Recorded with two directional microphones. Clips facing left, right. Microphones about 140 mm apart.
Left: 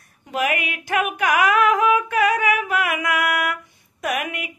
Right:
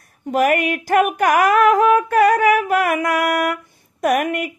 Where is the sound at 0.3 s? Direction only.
45° right (ahead or behind).